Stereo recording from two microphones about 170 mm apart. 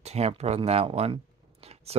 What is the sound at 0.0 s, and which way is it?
Speech, 40° right (ahead or behind).